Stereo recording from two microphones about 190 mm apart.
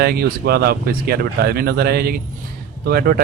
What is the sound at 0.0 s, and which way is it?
Speech, 55° right (ahead or behind).